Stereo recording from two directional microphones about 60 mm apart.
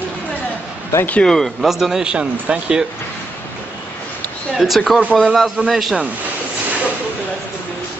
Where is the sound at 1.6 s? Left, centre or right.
Centre.